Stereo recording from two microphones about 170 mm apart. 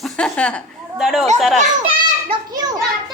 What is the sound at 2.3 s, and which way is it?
Speech, 25° right (ahead or behind).